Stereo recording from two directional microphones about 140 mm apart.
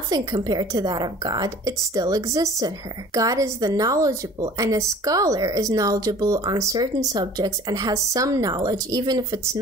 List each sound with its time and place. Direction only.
0.1 s a woman's voice: 25° right (ahead or behind)